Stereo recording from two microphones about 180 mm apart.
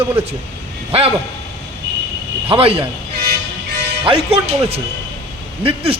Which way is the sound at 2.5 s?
30° right (ahead or behind).